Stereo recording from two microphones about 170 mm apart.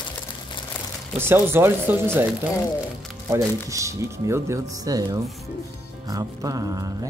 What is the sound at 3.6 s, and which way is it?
Speech, 20° right (ahead or behind).